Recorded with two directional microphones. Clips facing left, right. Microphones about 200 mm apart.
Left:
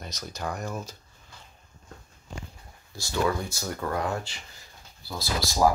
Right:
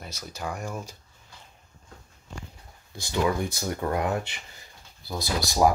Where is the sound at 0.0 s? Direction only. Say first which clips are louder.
Left 1 dB; 5° right (ahead or behind).